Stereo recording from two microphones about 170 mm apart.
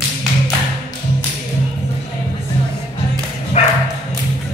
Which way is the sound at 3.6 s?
40° left (ahead or behind).